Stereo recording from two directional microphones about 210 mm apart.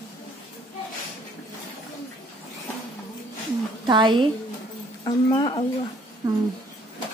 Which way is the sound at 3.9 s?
20° right (ahead or behind).